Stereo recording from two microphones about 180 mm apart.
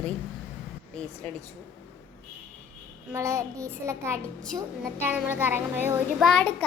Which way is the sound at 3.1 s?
15° right (ahead or behind).